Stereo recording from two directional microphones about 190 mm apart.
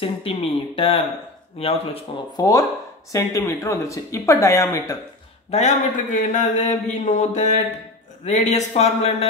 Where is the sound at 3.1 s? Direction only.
15° left (ahead or behind).